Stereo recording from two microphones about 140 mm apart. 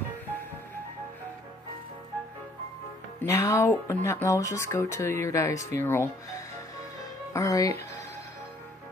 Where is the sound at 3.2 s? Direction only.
20° left (ahead or behind).